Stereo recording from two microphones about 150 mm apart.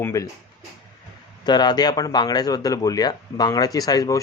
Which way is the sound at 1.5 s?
30° left (ahead or behind).